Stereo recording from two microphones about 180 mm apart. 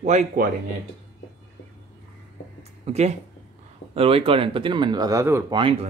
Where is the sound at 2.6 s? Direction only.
35° right (ahead or behind).